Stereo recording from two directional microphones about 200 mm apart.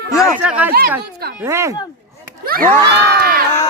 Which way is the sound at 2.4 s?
45° right (ahead or behind).